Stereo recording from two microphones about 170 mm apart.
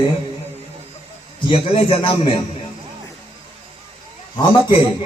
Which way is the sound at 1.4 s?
30° left (ahead or behind).